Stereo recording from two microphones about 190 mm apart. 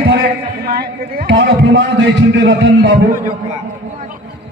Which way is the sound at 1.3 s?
65° right (ahead or behind).